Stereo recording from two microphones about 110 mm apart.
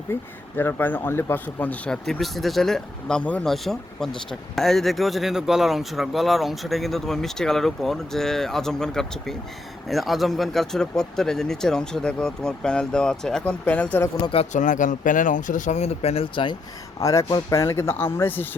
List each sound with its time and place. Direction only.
0.1 s speech: 20° left (ahead or behind)
14.3 s speech: 60° left (ahead or behind)
15.7 s speech: 80° left; by 16.6 s 50° left (ahead or behind)
17.0 s speech: 30° left (ahead or behind)